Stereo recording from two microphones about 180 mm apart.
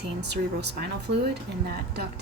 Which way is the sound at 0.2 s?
70° right (ahead or behind).